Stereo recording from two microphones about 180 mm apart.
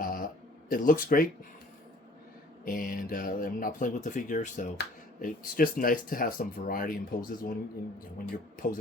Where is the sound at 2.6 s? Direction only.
50° left (ahead or behind).